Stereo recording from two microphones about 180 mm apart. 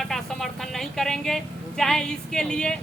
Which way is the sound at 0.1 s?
Centre (ahead or behind).